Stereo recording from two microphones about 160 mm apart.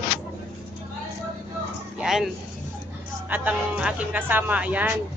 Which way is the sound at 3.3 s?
10° right (ahead or behind).